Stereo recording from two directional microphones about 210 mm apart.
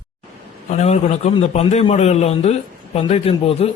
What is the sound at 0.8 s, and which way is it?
A man's voice, 30° left (ahead or behind).